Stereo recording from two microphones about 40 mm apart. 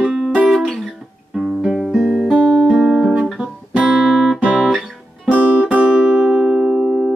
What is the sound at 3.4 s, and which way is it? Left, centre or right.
Guitar, right.